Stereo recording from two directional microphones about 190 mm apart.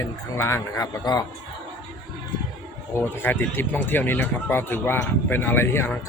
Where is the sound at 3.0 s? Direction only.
10° left (ahead or behind).